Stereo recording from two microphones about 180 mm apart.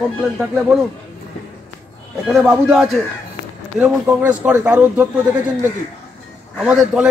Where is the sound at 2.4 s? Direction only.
10° right (ahead or behind).